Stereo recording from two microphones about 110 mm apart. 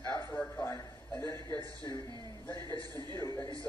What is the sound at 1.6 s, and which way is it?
A man's voice, 40° left (ahead or behind).